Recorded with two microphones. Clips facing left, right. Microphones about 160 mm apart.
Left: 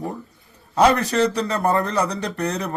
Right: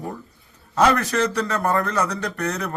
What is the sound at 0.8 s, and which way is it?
Speech, 15° left (ahead or behind).